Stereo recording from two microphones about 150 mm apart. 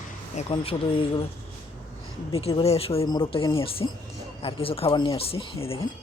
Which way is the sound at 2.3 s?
40° left (ahead or behind).